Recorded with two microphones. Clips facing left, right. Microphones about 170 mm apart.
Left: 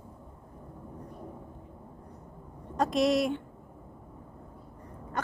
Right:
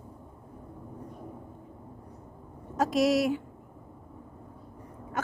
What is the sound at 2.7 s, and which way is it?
Speech, centre (ahead or behind).